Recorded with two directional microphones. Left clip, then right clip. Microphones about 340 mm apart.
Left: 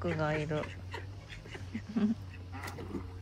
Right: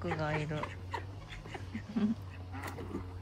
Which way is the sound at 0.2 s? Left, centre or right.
Centre.